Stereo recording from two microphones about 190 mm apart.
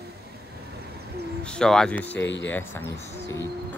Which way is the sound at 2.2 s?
70° left (ahead or behind).